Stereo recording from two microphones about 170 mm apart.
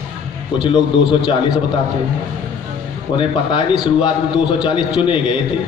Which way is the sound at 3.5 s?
25° left (ahead or behind).